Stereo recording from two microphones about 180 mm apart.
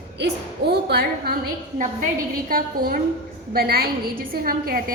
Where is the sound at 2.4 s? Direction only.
55° right (ahead or behind).